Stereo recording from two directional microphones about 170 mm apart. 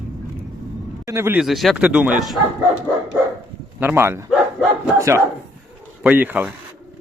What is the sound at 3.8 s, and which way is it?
Speech, 15° right (ahead or behind).